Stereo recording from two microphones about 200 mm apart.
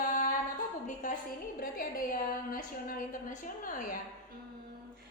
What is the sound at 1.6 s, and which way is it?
A woman's voice, 45° left (ahead or behind).